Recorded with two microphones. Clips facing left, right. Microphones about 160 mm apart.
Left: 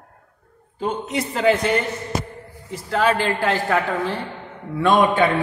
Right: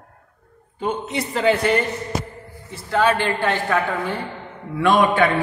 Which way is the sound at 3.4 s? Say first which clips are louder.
Even; 35° left (ahead or behind).